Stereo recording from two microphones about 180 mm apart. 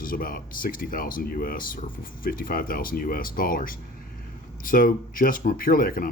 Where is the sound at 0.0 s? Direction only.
50° left (ahead or behind).